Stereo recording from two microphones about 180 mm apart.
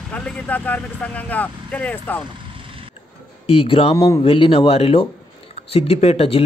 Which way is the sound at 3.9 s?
15° left (ahead or behind).